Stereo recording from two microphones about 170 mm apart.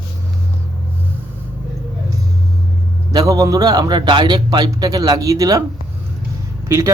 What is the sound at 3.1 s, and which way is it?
A man's voice, 20° right (ahead or behind).